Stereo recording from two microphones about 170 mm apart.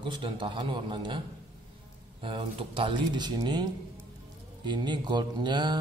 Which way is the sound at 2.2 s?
30° right (ahead or behind).